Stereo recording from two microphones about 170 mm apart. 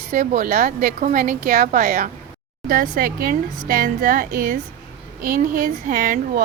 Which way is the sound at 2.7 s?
55° right (ahead or behind).